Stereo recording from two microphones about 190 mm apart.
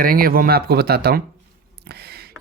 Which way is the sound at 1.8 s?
60° right (ahead or behind).